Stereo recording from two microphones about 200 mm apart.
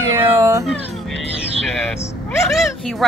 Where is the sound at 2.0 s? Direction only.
15° left (ahead or behind).